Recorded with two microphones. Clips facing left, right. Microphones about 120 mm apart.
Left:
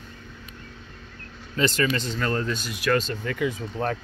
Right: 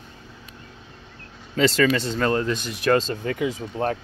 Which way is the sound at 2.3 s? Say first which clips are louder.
Right 4 dB; 20° right (ahead or behind).